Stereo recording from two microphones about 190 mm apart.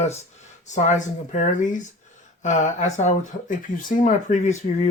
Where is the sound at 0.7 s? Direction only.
40° left (ahead or behind).